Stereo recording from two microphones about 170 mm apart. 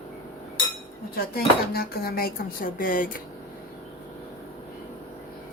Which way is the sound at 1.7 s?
65° left (ahead or behind).